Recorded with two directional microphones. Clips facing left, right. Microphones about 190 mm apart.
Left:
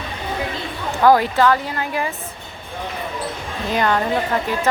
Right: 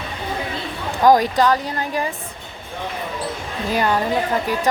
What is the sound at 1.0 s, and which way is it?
Speech, 15° right (ahead or behind).